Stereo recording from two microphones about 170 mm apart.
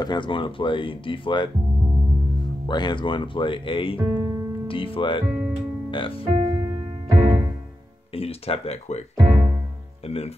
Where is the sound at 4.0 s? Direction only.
25° right (ahead or behind).